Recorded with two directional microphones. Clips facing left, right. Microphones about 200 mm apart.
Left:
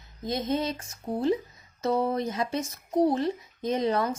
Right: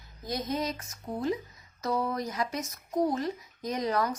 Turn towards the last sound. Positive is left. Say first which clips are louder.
# left 3 dB
turn(degrees=25)  # may be behind; listen again after turning